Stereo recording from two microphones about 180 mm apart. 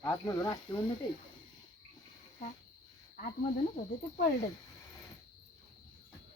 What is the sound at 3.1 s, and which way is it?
Speech, 50° left (ahead or behind).